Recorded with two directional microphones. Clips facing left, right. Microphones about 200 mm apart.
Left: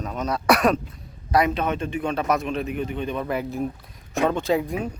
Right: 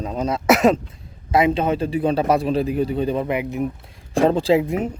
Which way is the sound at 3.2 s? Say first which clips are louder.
Right 3 dB; 15° right (ahead or behind).